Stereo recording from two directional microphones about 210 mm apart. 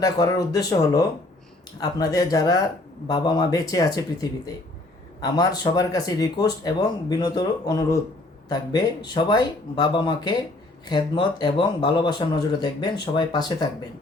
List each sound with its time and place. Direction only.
0.0 s speech: 15° left (ahead or behind)